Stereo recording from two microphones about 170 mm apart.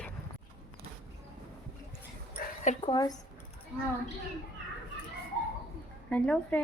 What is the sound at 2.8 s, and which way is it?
Speech, 25° left (ahead or behind).